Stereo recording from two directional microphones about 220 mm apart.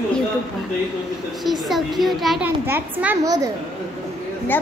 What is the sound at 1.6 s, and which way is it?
A woman's voice, centre (ahead or behind).